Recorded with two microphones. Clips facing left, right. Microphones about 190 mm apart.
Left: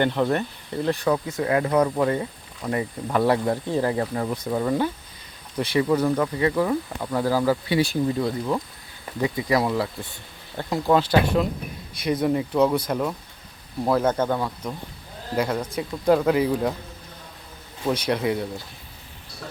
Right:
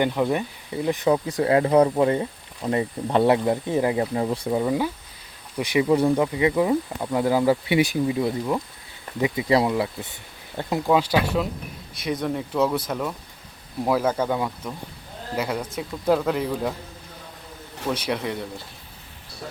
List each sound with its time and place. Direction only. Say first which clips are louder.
0.0 s speech: even; 10° right (ahead or behind)
0.9 s speech: right 2 dB; 20° right (ahead or behind)
4.4 s speech: left 2 dB; 10° right (ahead or behind)
10.8 s speech: left 2 dB; 5° right (ahead or behind)
17.9 s speech: left 4 dB; 5° right (ahead or behind)